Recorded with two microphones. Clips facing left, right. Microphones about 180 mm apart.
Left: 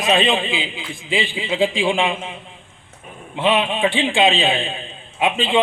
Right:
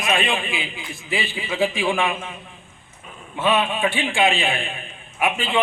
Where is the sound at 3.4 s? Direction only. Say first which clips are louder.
Left 2 dB; 20° left (ahead or behind).